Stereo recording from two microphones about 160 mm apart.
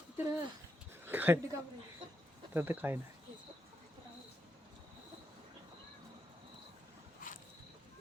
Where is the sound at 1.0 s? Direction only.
15° right (ahead or behind).